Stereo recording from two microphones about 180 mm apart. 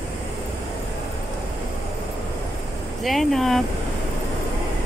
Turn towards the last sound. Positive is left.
turn(degrees=0)  # may be behind; listen again after turning